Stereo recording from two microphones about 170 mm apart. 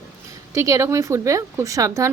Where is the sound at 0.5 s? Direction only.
20° right (ahead or behind).